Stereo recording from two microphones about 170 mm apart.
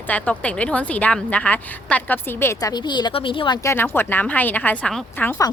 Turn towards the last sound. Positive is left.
turn(degrees=10)  # may be behind; listen again after turning